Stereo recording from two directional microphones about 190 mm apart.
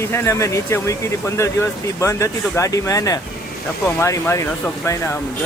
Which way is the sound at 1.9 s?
15° left (ahead or behind).